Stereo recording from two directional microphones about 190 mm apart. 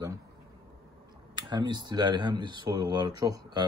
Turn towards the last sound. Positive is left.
turn(degrees=-20)  # may be behind; listen again after turning